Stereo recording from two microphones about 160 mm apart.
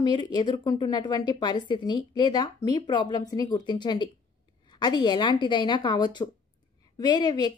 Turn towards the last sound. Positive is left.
turn(degrees=25)  # may be behind; listen again after turning